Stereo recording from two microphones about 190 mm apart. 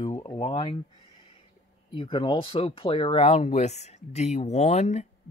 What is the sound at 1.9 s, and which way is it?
Speech, 25° left (ahead or behind).